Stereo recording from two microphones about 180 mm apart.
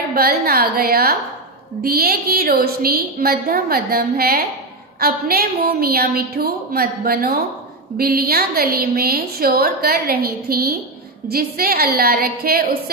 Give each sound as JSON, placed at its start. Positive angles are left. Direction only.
{"t": 0.1, "sound": "a woman's voice", "side_deg": -55}